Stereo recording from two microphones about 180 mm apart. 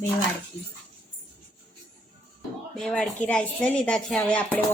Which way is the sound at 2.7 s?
Centre (ahead or behind).